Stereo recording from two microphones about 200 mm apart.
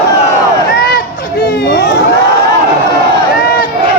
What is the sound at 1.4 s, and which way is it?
Vehicle, 55° left (ahead or behind).